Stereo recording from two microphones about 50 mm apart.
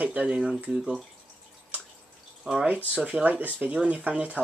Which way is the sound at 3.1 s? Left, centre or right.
Right.